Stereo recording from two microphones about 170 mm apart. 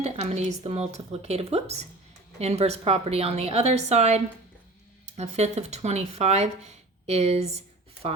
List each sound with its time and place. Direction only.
0.0 s speech: 40° right (ahead or behind)